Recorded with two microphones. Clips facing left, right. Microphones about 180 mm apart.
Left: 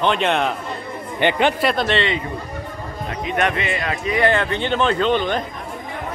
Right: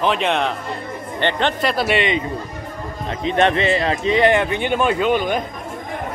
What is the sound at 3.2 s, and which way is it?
A man's voice, 30° right (ahead or behind).